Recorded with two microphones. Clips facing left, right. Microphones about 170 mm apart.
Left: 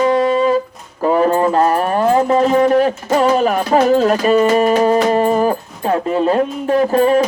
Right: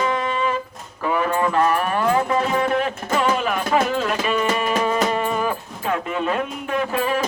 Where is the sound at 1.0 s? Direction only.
35° left (ahead or behind).